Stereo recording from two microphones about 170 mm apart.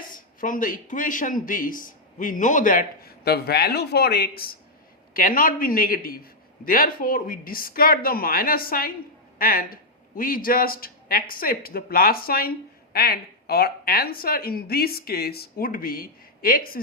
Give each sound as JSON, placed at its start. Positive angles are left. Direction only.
{"t": 0.3, "sound": "a man's voice", "side_deg": 50}
{"t": 5.1, "sound": "speech", "side_deg": 55}